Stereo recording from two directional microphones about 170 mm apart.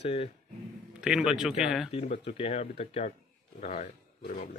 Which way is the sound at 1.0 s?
5° right (ahead or behind).